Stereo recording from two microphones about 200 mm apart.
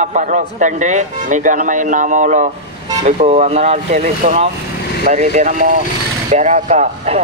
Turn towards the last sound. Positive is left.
turn(degrees=-35)  # may be behind; listen again after turning